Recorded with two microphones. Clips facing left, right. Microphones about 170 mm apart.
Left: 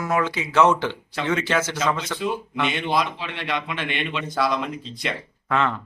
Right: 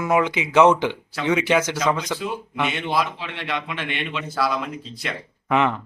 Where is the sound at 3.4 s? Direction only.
5° right (ahead or behind).